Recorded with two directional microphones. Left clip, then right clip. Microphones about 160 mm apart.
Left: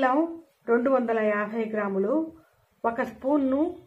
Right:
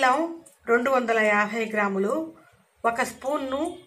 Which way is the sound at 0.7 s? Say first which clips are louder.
Right 1 dB; 15° left (ahead or behind).